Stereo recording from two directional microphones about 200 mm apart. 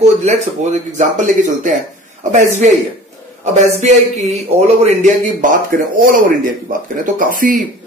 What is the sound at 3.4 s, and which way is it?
A man's voice, 35° right (ahead or behind).